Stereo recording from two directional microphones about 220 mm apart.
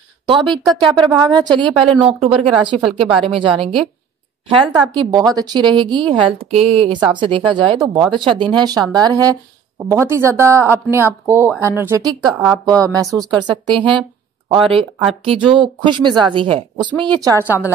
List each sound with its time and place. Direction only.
0.3 s a woman's voice: 20° right (ahead or behind)